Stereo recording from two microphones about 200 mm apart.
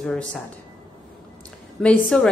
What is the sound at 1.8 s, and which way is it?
Speech, 5° left (ahead or behind).